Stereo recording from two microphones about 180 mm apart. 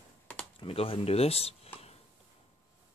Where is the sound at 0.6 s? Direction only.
30° left (ahead or behind).